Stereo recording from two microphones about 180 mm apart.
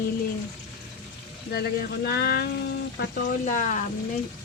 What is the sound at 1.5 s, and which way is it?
Speech, 65° left (ahead or behind).